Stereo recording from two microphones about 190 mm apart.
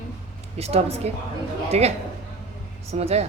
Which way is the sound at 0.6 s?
35° right (ahead or behind).